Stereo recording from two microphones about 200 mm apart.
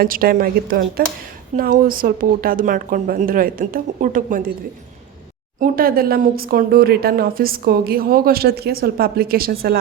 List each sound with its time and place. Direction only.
0.0 s speech: 45° right (ahead or behind)
5.5 s speech: 45° right (ahead or behind)